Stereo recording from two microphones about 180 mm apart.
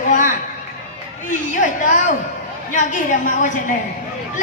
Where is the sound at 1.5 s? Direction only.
45° left (ahead or behind).